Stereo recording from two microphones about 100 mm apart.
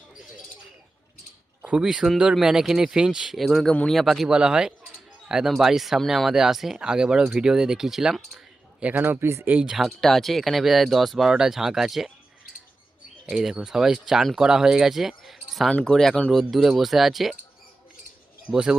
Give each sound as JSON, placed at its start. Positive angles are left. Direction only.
{"t": 1.6, "sound": "speech", "side_deg": -10}
{"t": 8.8, "sound": "speech", "side_deg": -20}
{"t": 9.7, "sound": "speech", "side_deg": 0}
{"t": 13.3, "sound": "speech", "side_deg": -5}
{"t": 18.4, "sound": "speech", "side_deg": -10}